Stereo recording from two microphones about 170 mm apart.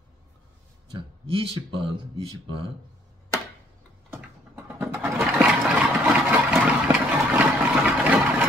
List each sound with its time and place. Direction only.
0.8 s speech: 35° right (ahead or behind)
4.1 s mechanisms: 15° right (ahead or behind)
5.2 s engine: 5° right (ahead or behind)